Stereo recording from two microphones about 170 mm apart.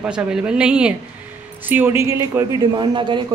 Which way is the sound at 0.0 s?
5° right (ahead or behind).